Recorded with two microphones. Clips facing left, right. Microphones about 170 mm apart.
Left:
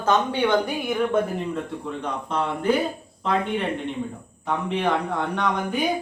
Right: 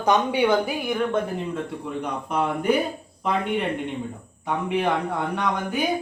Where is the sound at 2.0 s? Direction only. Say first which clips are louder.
Right 2 dB; 10° right (ahead or behind).